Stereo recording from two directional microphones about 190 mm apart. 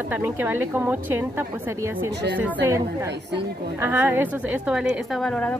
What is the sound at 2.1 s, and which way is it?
Speech, 65° right (ahead or behind).